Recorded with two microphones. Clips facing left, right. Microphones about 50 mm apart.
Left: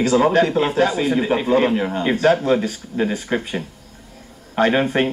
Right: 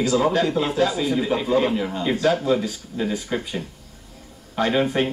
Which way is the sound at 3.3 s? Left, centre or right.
Left.